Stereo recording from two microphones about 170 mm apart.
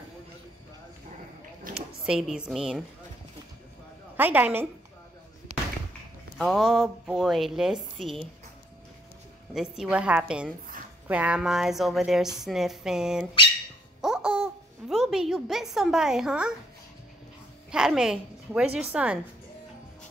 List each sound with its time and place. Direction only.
1.7 s a sound: 50° right (ahead or behind)
2.0 s a woman's voice: 5° right (ahead or behind)
4.2 s a woman's voice: 10° right (ahead or behind)
6.3 s a woman's voice: centre (ahead or behind)
9.5 s a woman's voice: 5° right (ahead or behind)
14.0 s babbling: 5° right (ahead or behind)
17.6 s a woman's voice: 5° right (ahead or behind)